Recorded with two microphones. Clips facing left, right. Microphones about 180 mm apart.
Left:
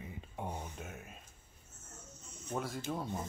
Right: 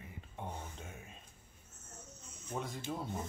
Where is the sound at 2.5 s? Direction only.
Centre (ahead or behind).